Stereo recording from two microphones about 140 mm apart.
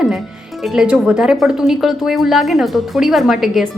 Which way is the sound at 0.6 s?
5° right (ahead or behind).